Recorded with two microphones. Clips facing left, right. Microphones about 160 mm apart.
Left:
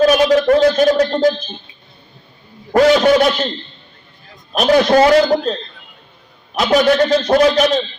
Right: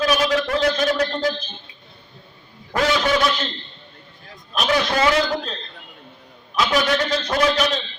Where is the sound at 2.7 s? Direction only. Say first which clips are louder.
Left 9 dB; 45° left (ahead or behind).